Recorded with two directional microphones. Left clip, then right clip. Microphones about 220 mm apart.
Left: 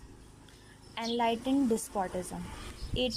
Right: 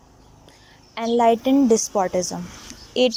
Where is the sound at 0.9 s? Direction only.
25° right (ahead or behind).